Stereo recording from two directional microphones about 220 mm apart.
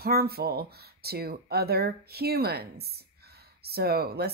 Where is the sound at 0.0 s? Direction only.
45° right (ahead or behind).